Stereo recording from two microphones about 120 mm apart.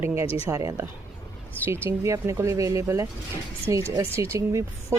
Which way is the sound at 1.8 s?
25° right (ahead or behind).